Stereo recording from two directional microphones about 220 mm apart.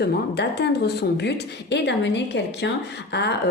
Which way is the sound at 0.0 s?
50° left (ahead or behind).